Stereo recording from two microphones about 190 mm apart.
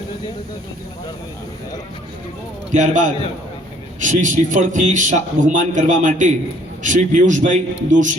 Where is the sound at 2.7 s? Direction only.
40° right (ahead or behind).